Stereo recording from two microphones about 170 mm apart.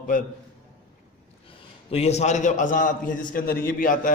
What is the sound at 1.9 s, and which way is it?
A man's voice, 40° left (ahead or behind).